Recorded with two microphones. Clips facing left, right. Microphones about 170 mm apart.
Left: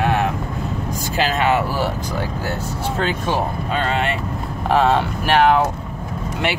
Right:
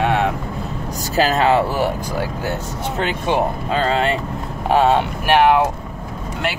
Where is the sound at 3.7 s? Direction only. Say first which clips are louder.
Right 3 dB; 30° right (ahead or behind).